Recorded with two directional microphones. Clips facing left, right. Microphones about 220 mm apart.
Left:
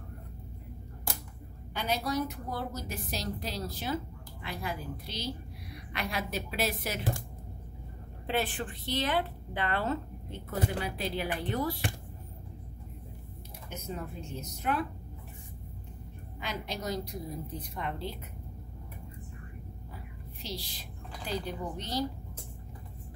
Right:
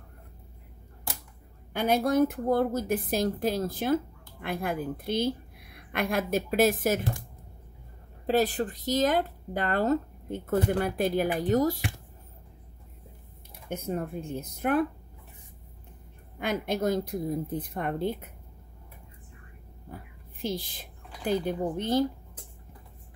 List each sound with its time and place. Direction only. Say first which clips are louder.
1.7 s a woman's voice: right 8 dB; 50° right (ahead or behind)
8.3 s a woman's voice: right 7 dB; 40° right (ahead or behind)
13.7 s a woman's voice: right 8 dB; 55° right (ahead or behind)
16.3 s a woman's voice: right 9 dB; 55° right (ahead or behind)
20.4 s speech: right 9 dB; 50° right (ahead or behind)